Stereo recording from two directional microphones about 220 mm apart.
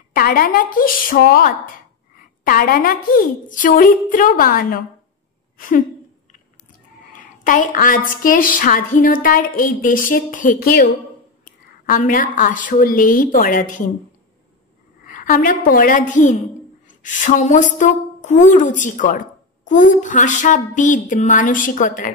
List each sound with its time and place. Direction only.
0.1 s speech: 40° left (ahead or behind)
7.1 s speech: 40° left (ahead or behind)
15.0 s a woman's voice: 35° left (ahead or behind)